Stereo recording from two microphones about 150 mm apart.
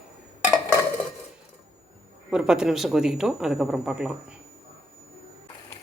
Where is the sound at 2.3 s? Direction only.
5° right (ahead or behind).